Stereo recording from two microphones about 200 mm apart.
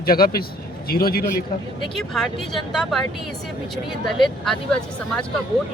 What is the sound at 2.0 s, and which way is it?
Speech, centre (ahead or behind).